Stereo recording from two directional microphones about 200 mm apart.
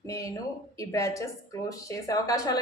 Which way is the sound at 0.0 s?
15° left (ahead or behind).